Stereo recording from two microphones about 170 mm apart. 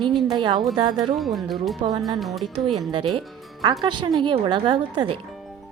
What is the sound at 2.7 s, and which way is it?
Speech, 30° right (ahead or behind).